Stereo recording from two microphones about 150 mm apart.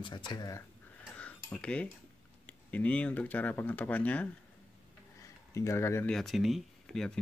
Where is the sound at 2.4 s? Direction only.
10° left (ahead or behind).